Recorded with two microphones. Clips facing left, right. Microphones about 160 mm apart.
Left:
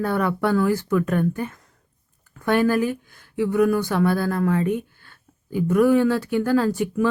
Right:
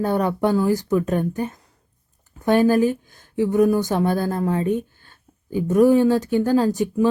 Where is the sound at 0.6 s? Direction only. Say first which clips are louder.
Right 1 dB; 35° right (ahead or behind).